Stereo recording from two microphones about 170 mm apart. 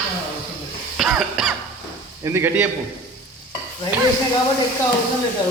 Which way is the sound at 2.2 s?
15° right (ahead or behind).